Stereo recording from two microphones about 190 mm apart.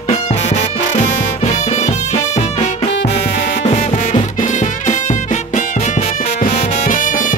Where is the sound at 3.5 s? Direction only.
40° left (ahead or behind).